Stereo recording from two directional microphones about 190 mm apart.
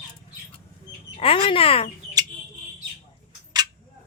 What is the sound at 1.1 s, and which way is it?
Speech, 30° left (ahead or behind).